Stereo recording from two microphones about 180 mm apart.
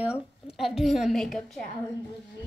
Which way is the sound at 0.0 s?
5° right (ahead or behind).